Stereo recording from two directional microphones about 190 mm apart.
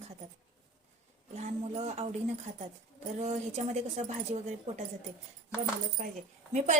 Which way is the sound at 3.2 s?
35° right (ahead or behind).